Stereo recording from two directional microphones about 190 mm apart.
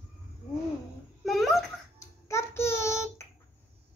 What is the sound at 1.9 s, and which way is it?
Child singing, 15° left (ahead or behind).